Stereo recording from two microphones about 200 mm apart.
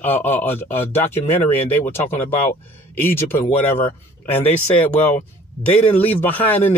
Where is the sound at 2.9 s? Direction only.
10° left (ahead or behind).